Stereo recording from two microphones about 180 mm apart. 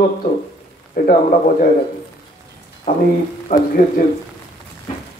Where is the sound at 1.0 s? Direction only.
50° left (ahead or behind).